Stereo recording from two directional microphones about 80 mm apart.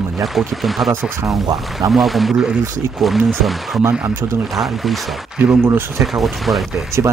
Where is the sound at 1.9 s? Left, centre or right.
Centre.